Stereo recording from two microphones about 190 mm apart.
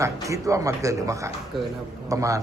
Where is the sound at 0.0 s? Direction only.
15° right (ahead or behind).